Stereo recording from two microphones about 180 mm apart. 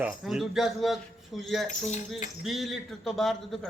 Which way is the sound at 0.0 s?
Centre (ahead or behind).